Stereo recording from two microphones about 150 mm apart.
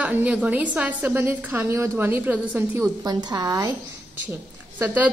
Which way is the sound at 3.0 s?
25° right (ahead or behind).